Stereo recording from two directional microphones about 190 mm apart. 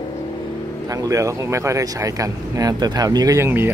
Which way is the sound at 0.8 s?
15° right (ahead or behind).